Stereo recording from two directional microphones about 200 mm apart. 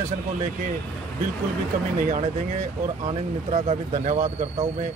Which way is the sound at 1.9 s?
40° right (ahead or behind).